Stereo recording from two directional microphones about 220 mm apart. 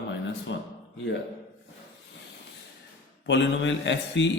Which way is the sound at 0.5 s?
55° left (ahead or behind).